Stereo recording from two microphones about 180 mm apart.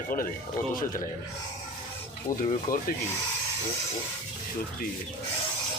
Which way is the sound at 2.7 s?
50° left (ahead or behind).